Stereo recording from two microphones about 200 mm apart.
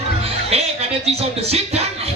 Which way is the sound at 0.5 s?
30° right (ahead or behind).